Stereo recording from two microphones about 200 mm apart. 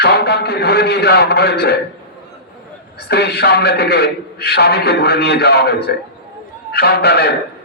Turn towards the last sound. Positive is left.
turn(degrees=55)  # may be behind; listen again after turning